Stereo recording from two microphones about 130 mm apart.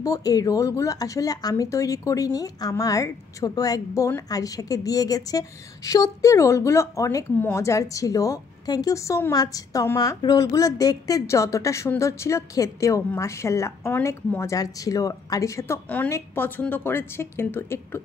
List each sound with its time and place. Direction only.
0.0 s a woman's voice: 30° left (ahead or behind)